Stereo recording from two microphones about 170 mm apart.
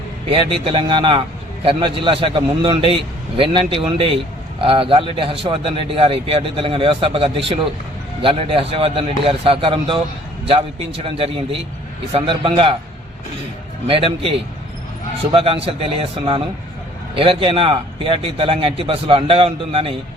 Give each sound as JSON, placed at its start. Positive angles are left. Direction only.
{"t": 0.6, "sound": "a man's voice", "side_deg": -30}
{"t": 13.8, "sound": "a man's voice", "side_deg": -35}